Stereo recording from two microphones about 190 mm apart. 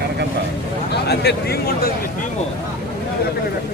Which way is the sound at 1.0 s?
60° left (ahead or behind).